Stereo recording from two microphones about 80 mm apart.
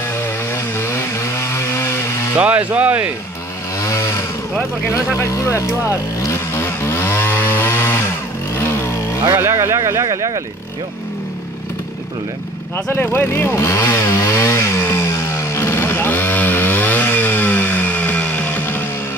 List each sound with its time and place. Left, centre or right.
0.0 s chainsaw: left
2.3 s speech: centre
3.8 s vehicle: left
9.3 s speech: right
12.7 s chainsaw: left